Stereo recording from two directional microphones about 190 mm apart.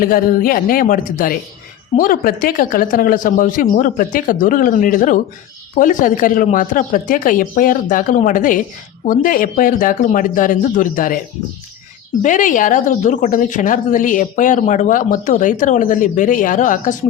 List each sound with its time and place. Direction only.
0.0 s a woman's voice: 50° left (ahead or behind)
12.2 s a woman's voice: 45° left (ahead or behind)